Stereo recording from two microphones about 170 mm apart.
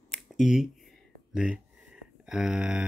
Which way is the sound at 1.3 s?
5° right (ahead or behind).